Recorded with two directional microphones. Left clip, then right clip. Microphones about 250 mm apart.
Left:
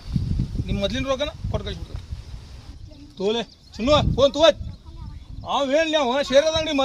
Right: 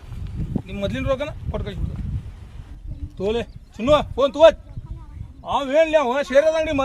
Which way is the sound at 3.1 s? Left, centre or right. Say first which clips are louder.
Even; centre.